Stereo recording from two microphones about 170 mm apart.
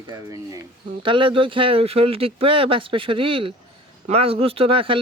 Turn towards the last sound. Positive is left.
turn(degrees=-30)  # may be behind; listen again after turning